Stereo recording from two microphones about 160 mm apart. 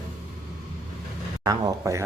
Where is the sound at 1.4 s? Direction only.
25° right (ahead or behind).